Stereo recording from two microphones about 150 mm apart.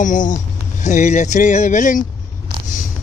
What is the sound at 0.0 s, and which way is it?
Speech, 60° left (ahead or behind).